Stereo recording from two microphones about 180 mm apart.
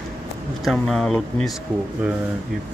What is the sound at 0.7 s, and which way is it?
Speech, centre (ahead or behind).